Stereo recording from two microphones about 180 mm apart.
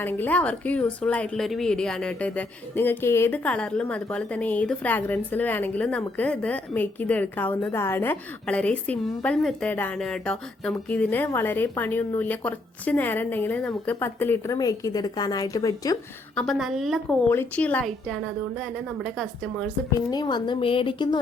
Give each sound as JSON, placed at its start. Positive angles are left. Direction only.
{"t": 0.0, "sound": "a woman's voice", "side_deg": 10}
{"t": 16.3, "sound": "a woman's voice", "side_deg": 5}
{"t": 17.2, "sound": "a woman's voice", "side_deg": 10}
{"t": 20.1, "sound": "a woman's voice", "side_deg": 25}